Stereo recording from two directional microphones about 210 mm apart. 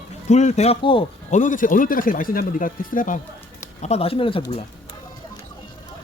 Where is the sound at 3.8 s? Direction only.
30° left (ahead or behind).